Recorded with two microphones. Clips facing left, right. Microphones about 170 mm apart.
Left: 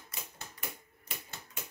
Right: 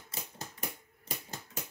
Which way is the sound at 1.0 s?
40° right (ahead or behind).